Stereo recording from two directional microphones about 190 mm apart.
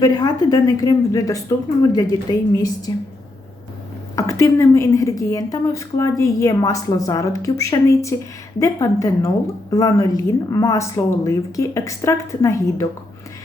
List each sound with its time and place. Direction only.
0.0 s a woman's voice: 20° left (ahead or behind)
4.1 s a woman's voice: 15° left (ahead or behind)